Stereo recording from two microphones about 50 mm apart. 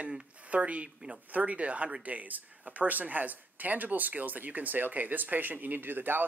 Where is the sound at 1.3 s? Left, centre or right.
Right.